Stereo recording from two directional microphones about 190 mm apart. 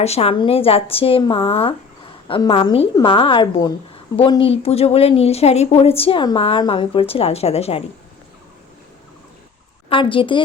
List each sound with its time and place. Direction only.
0.0 s a woman's voice: 30° left (ahead or behind)
9.9 s a woman's voice: 25° left (ahead or behind)